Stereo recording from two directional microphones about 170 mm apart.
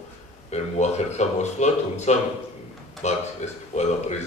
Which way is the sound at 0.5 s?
40° left (ahead or behind).